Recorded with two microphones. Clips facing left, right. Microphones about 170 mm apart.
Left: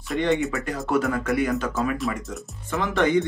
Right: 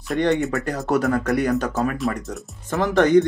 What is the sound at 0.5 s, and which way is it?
Speech, 40° right (ahead or behind).